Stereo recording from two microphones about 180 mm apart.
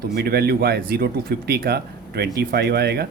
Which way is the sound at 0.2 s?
60° right (ahead or behind).